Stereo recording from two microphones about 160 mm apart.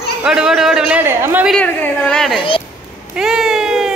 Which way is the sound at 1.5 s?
5° left (ahead or behind).